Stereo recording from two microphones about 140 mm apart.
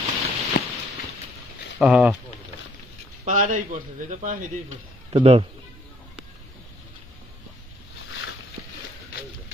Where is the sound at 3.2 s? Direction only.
70° right (ahead or behind).